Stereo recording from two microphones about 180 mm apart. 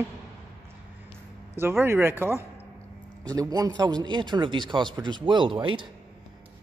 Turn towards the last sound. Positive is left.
turn(degrees=-25)  # may be behind; listen again after turning